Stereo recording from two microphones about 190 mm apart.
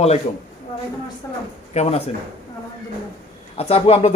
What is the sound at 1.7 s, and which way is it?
Speech, 35° left (ahead or behind).